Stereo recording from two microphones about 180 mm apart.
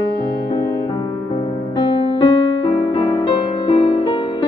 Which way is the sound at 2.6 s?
30° left (ahead or behind).